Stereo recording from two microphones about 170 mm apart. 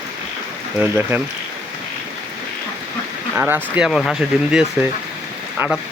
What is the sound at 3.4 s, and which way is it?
Speech, 10° right (ahead or behind).